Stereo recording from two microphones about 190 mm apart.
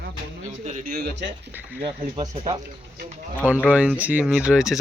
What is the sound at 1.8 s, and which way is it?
Speech, 20° right (ahead or behind).